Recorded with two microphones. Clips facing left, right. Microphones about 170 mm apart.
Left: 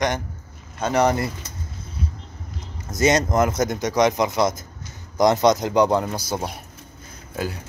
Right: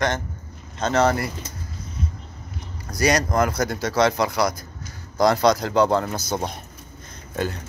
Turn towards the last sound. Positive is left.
turn(degrees=5)  # may be behind; listen again after turning